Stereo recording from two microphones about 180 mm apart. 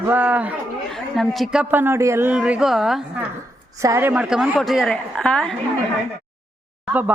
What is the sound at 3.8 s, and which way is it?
A woman's voice, 15° right (ahead or behind).